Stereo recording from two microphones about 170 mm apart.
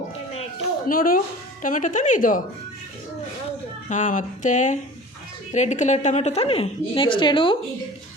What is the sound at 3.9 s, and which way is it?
A woman's voice, 50° left (ahead or behind).